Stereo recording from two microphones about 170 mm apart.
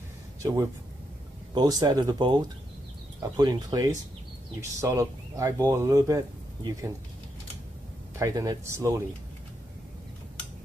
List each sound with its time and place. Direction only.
0.4 s speech: 20° right (ahead or behind)
8.2 s speech: 20° right (ahead or behind)